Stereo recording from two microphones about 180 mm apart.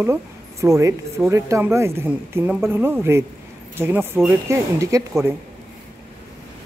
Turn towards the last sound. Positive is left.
turn(degrees=-15)  # may be behind; listen again after turning